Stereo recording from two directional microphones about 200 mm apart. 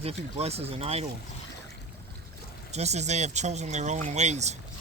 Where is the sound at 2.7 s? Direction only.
35° right (ahead or behind).